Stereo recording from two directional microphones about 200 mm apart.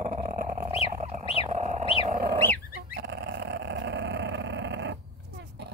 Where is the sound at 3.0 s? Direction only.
55° right (ahead or behind).